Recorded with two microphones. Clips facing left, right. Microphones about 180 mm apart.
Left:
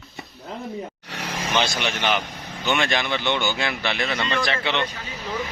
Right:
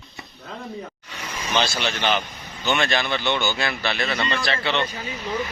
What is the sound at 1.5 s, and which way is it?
Speech, 15° left (ahead or behind).